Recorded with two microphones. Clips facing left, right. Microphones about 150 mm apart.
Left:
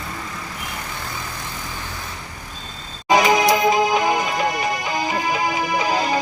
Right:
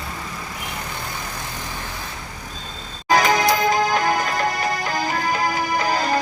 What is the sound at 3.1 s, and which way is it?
Music, centre (ahead or behind).